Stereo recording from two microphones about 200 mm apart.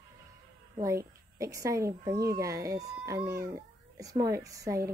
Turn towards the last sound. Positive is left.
turn(degrees=-15)  # may be behind; listen again after turning